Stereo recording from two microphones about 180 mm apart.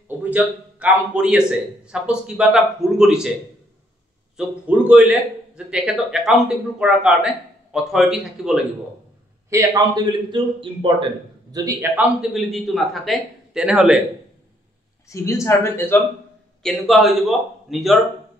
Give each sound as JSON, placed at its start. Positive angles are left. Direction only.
{"t": 0.2, "sound": "a man's voice", "side_deg": -10}
{"t": 4.4, "sound": "a man's voice", "side_deg": -5}
{"t": 9.5, "sound": "a man's voice", "side_deg": -20}
{"t": 11.5, "sound": "a man's voice", "side_deg": -15}
{"t": 15.0, "sound": "speech", "side_deg": 15}
{"t": 16.6, "sound": "a man's voice", "side_deg": 0}